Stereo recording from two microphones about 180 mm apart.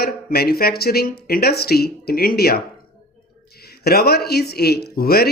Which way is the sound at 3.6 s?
60° left (ahead or behind).